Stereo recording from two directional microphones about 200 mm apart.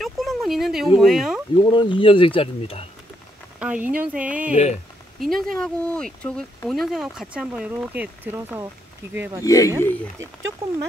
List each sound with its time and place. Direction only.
0.0 s speech: centre (ahead or behind)
1.6 s speech: 25° left (ahead or behind)
3.5 s speech: 5° right (ahead or behind)
9.4 s speech: 15° left (ahead or behind)
10.6 s speech: 15° right (ahead or behind)